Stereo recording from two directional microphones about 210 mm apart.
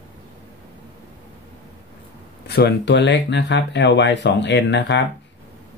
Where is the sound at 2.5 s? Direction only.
50° left (ahead or behind).